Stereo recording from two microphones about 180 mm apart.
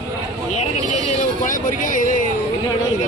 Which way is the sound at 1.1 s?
45° left (ahead or behind).